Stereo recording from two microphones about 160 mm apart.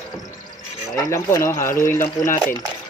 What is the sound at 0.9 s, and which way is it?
Speech, 15° left (ahead or behind).